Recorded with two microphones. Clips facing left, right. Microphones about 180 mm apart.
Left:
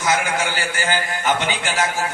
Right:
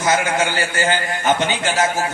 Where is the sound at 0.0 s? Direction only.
25° right (ahead or behind).